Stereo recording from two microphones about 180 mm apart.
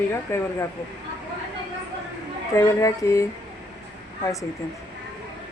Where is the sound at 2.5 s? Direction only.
15° left (ahead or behind).